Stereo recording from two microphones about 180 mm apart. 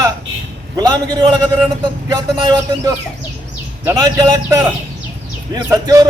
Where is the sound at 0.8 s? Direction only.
20° right (ahead or behind).